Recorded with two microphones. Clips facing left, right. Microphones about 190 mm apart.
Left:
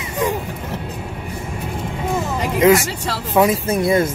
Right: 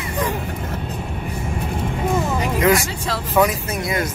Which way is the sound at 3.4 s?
30° left (ahead or behind).